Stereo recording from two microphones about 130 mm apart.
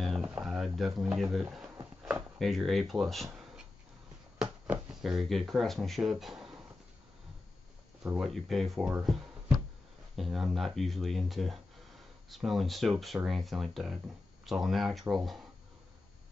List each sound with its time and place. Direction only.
0.4 s a sound: centre (ahead or behind)
0.7 s speech: centre (ahead or behind)
4.4 s speech: 5° right (ahead or behind)
8.2 s speech: centre (ahead or behind)